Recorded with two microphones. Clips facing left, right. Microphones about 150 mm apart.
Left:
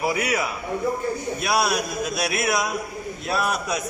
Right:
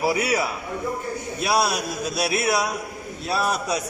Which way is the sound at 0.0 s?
30° right (ahead or behind).